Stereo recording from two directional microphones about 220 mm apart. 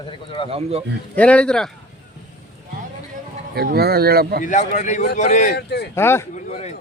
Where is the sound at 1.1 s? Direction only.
5° left (ahead or behind).